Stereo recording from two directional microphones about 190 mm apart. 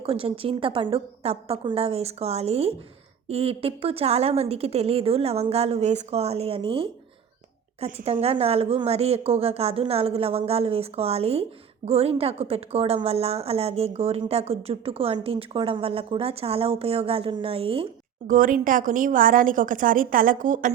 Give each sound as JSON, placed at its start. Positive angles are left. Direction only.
{"t": 0.0, "sound": "a woman's voice", "side_deg": -30}
{"t": 18.3, "sound": "a woman's voice", "side_deg": -45}